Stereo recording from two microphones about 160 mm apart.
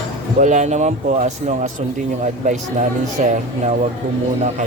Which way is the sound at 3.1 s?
45° right (ahead or behind).